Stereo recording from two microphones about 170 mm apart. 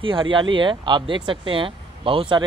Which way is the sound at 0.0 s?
30° right (ahead or behind).